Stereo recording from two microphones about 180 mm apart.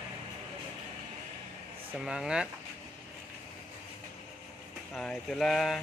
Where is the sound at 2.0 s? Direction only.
5° right (ahead or behind).